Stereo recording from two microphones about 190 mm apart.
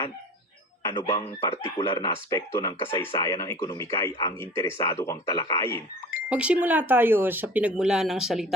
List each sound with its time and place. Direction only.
1.0 s speech: 15° left (ahead or behind)
6.2 s speech: 5° right (ahead or behind)